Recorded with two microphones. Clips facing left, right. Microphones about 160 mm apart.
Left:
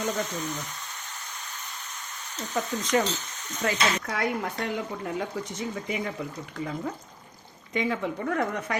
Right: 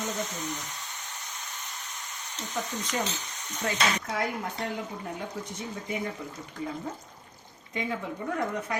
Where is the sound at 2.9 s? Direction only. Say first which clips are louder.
Left 7 dB; 90° left.